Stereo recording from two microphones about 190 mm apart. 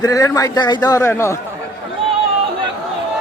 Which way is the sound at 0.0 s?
15° left (ahead or behind).